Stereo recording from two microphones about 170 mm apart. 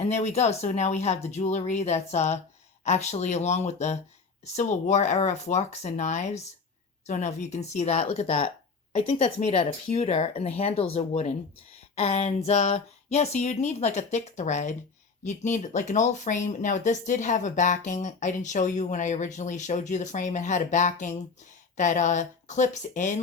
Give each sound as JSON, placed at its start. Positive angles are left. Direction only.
{"t": 0.0, "sound": "speech", "side_deg": 40}